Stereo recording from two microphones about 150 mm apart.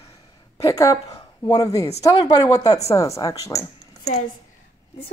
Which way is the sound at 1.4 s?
25° left (ahead or behind).